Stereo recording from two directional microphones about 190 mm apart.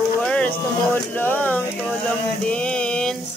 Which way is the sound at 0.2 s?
5° left (ahead or behind).